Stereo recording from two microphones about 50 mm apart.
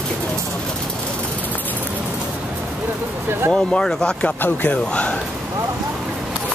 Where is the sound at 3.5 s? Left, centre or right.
Centre.